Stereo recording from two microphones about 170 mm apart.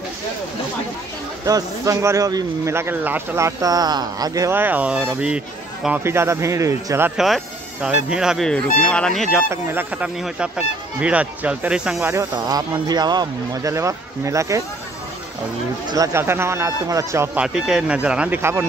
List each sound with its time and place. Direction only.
1.4 s a man's voice: 20° right (ahead or behind)
7.2 s speech: centre (ahead or behind)
9.5 s a man's voice: 10° right (ahead or behind)
15.9 s a man's voice: 20° right (ahead or behind)